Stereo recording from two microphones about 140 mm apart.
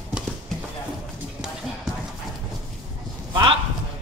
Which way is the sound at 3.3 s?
35° right (ahead or behind).